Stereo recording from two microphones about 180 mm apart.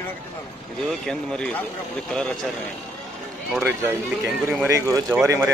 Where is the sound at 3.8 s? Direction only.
10° right (ahead or behind).